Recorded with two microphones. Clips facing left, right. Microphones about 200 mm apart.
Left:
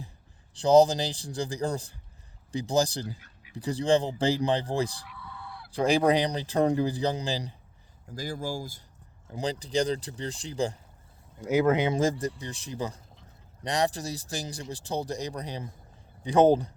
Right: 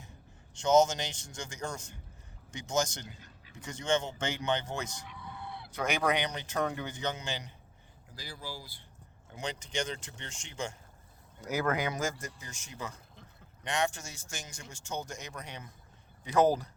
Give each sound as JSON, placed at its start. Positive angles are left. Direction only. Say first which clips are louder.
{"t": 0.5, "sound": "speech", "louder": "left 6 dB", "side_deg": 35}
{"t": 5.1, "sound": "fowl", "louder": "even", "side_deg": -20}
{"t": 5.7, "sound": "speech", "louder": "left 8 dB", "side_deg": 30}
{"t": 8.1, "sound": "speech", "louder": "left 11 dB", "side_deg": 45}
{"t": 9.3, "sound": "speech", "louder": "left 8 dB", "side_deg": 35}
{"t": 11.4, "sound": "speech", "louder": "left 8 dB", "side_deg": 25}